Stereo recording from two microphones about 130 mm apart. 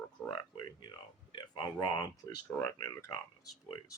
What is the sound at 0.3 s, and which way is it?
Speech, 35° left (ahead or behind).